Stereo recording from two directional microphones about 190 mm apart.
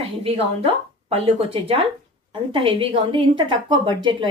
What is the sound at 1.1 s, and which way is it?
A woman's voice, 30° right (ahead or behind).